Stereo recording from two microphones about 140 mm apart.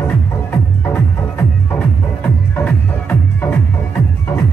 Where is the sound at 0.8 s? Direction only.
15° left (ahead or behind).